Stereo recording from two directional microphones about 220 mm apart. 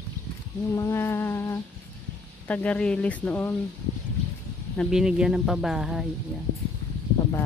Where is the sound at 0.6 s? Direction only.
10° left (ahead or behind).